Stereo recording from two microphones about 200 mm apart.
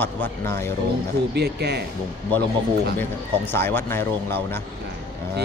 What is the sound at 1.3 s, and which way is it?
Speech, 55° right (ahead or behind).